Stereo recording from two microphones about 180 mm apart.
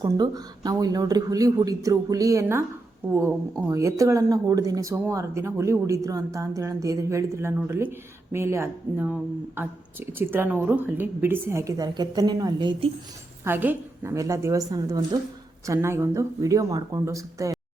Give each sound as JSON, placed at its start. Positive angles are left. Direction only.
{"t": 0.0, "sound": "speech", "side_deg": -20}
{"t": 13.4, "sound": "speech", "side_deg": -10}